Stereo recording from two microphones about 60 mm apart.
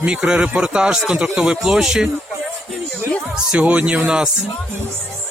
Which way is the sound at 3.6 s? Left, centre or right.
Right.